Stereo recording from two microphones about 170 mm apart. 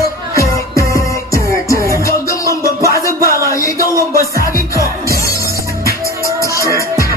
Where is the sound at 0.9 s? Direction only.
20° left (ahead or behind).